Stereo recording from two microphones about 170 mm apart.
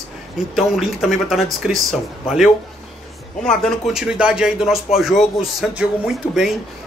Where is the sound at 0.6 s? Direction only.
Centre (ahead or behind).